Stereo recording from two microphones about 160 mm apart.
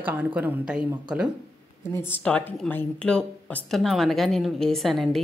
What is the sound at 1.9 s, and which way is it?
Speech, 15° left (ahead or behind).